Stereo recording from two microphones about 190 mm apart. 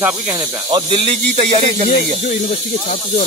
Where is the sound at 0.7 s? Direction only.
30° right (ahead or behind).